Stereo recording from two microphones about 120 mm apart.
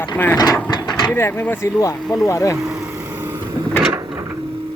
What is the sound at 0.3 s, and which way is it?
Speech, 35° left (ahead or behind).